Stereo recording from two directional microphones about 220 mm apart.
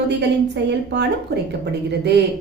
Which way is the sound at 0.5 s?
50° right (ahead or behind).